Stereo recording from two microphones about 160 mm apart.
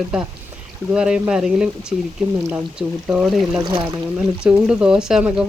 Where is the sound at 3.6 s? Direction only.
30° right (ahead or behind).